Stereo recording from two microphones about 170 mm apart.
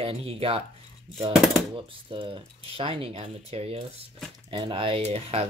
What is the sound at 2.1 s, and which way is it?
Speech, 30° right (ahead or behind).